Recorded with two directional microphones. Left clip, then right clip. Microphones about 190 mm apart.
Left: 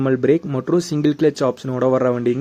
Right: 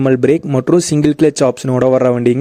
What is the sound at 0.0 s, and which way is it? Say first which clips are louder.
Speech: right 5 dB; 45° right (ahead or behind).